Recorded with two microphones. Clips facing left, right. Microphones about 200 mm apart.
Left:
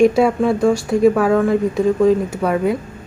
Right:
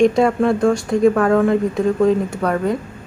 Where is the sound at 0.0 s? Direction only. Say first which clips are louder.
Left 1 dB; 5° left (ahead or behind).